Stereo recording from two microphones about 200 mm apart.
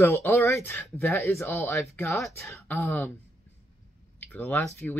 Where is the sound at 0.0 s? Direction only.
10° left (ahead or behind).